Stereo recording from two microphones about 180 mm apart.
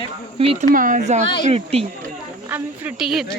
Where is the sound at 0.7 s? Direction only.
50° right (ahead or behind).